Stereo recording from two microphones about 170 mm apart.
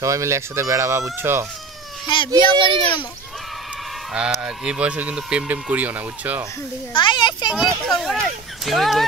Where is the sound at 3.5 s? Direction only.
Centre (ahead or behind).